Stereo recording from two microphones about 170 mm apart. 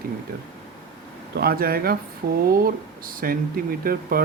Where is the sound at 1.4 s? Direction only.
60° right (ahead or behind).